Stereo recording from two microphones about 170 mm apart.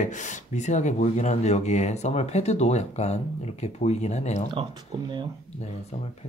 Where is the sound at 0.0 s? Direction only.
45° left (ahead or behind).